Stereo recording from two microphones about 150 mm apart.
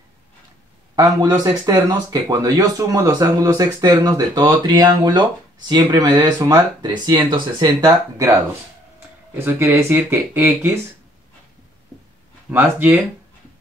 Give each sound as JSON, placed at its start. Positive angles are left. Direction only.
{"t": 0.9, "sound": "speech", "side_deg": -25}
{"t": 12.4, "sound": "speech", "side_deg": -10}